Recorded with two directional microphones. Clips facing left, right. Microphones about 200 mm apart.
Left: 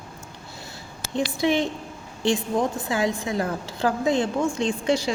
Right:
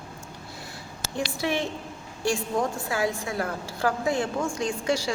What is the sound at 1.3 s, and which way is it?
A woman's voice, 15° left (ahead or behind).